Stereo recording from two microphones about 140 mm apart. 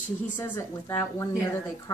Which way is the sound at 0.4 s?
20° left (ahead or behind).